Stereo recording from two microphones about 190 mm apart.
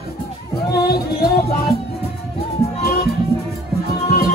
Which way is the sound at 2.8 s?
50° left (ahead or behind).